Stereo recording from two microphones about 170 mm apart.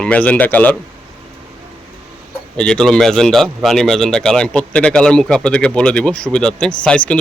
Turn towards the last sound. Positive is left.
turn(degrees=5)  # may be behind; listen again after turning